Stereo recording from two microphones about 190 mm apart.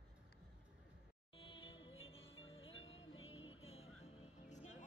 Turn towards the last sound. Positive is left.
turn(degrees=30)  # may be behind; listen again after turning